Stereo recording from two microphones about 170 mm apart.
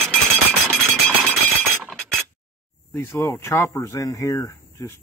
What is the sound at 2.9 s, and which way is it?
Speech, 15° left (ahead or behind).